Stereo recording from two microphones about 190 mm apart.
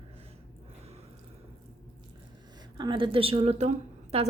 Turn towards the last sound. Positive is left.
turn(degrees=-35)  # may be behind; listen again after turning